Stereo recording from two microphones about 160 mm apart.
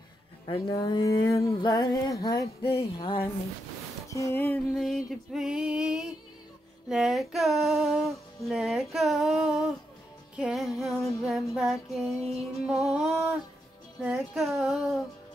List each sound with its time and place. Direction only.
0.5 s music: 30° left (ahead or behind)
2.7 s music: 35° left (ahead or behind)
4.1 s a sound: 15° left (ahead or behind)
4.7 s music: centre (ahead or behind)